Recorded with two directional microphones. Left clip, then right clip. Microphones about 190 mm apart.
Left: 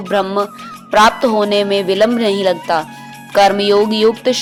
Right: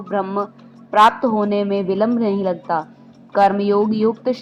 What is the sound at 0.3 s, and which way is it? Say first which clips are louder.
Speech: left 6 dB; 30° left (ahead or behind).